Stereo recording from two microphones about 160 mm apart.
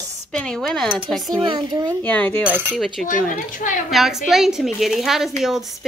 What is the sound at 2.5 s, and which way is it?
Speech, 10° right (ahead or behind).